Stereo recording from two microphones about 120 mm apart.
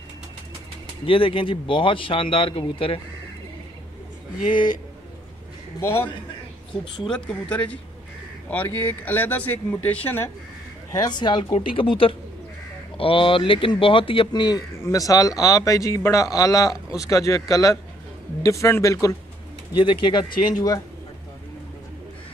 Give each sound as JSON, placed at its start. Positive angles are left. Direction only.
{"t": 1.0, "sound": "speech", "side_deg": 50}
{"t": 5.8, "sound": "a man's voice", "side_deg": 20}
{"t": 7.1, "sound": "speech", "side_deg": 5}
{"t": 10.9, "sound": "a man's voice", "side_deg": 35}
{"t": 19.8, "sound": "speech", "side_deg": 40}